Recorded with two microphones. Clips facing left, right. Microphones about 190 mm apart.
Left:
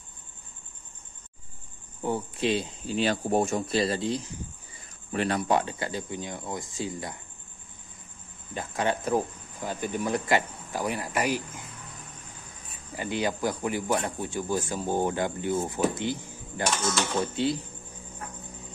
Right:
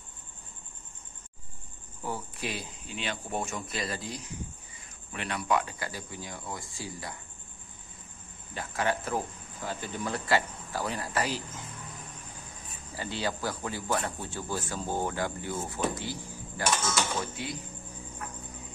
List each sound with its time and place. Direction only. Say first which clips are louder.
2.0 s speech: left 8 dB; 25° left (ahead or behind)
3.0 s speech: left 10 dB; 40° left (ahead or behind)
5.1 s speech: left 5 dB; 40° left (ahead or behind); by 7.2 s 20° left (ahead or behind)
8.5 s speech: left 2 dB; 20° left (ahead or behind)
12.9 s speech: left 4 dB; 15° left (ahead or behind)